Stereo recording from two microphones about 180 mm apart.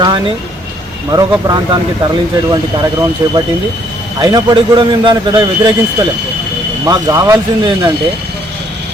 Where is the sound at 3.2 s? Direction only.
15° right (ahead or behind).